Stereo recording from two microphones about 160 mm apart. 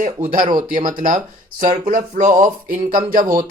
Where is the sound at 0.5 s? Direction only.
55° right (ahead or behind).